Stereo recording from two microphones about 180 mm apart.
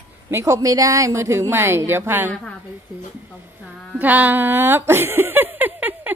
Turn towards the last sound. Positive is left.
turn(degrees=-10)  # may be behind; listen again after turning